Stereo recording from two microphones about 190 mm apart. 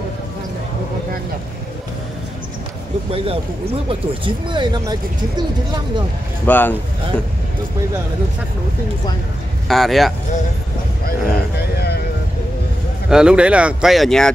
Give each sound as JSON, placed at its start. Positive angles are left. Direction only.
{"t": 3.1, "sound": "speech", "side_deg": -30}
{"t": 6.4, "sound": "speech", "side_deg": 10}
{"t": 9.7, "sound": "speech", "side_deg": 0}
{"t": 11.1, "sound": "a sound", "side_deg": 60}
{"t": 13.1, "sound": "speech", "side_deg": -5}